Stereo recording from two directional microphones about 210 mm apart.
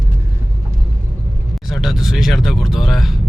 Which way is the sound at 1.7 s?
Centre (ahead or behind).